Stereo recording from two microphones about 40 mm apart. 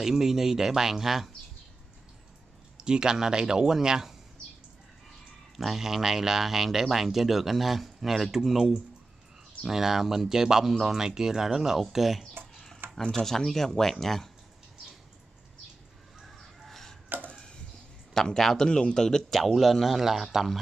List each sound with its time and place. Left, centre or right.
0.0 s speech: centre
2.8 s speech: centre
5.6 s speech: centre
13.1 s speech: centre
16.6 s a sound: centre
17.1 s a sound: right
18.1 s speech: centre
19.3 s speech: centre